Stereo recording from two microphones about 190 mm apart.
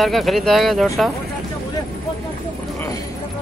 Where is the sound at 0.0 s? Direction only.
Centre (ahead or behind).